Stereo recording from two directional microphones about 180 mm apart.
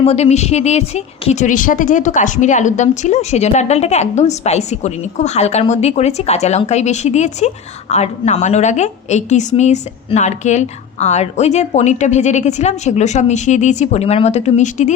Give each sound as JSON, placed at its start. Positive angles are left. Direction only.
{"t": 0.0, "sound": "a woman's voice", "side_deg": 35}